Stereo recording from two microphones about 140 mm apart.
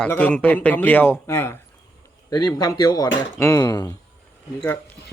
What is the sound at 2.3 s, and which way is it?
Speech, 25° left (ahead or behind).